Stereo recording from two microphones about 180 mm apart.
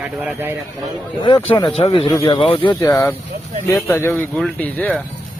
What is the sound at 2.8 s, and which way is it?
Speech, 15° left (ahead or behind).